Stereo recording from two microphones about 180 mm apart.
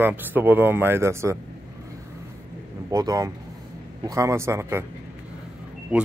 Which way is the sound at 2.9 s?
20° right (ahead or behind).